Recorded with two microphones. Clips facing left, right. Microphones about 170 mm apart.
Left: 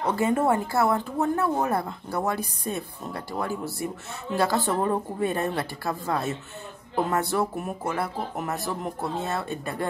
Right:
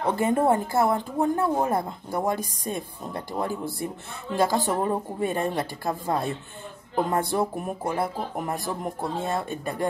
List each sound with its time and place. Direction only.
0.0 s speech: 25° right (ahead or behind)
1.3 s a woman's voice: 30° right (ahead or behind)